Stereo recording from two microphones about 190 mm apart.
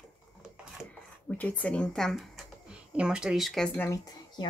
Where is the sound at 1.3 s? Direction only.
10° left (ahead or behind).